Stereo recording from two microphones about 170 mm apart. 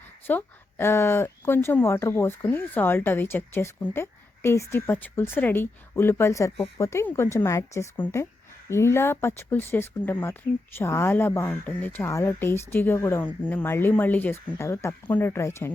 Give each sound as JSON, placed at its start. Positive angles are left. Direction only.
{"t": 0.3, "sound": "speech", "side_deg": 15}